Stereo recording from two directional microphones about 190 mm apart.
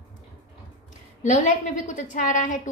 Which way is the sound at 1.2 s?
40° left (ahead or behind).